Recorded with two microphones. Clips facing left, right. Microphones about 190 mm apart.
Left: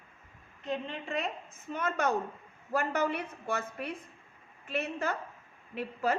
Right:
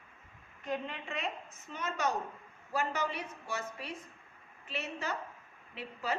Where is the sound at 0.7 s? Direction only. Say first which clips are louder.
Left 2 dB; 30° left (ahead or behind).